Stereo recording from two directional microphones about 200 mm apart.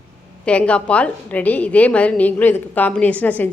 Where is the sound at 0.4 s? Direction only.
5° left (ahead or behind).